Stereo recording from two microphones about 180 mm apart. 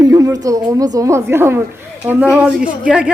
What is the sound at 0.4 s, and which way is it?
A woman's voice, 20° right (ahead or behind).